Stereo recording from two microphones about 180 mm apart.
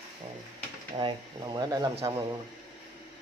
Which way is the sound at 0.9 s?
25° right (ahead or behind).